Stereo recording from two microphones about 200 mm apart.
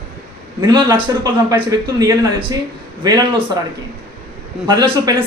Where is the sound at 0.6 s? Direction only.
20° right (ahead or behind).